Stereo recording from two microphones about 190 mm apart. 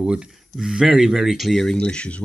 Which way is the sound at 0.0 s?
5° right (ahead or behind).